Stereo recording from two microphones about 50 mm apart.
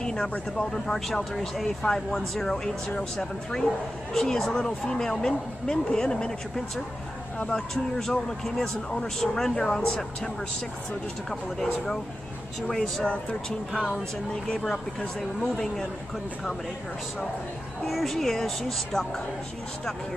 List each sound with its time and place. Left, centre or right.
0.0 s speech: centre
13.0 s speech: left
14.3 s speech: centre
17.8 s speech: centre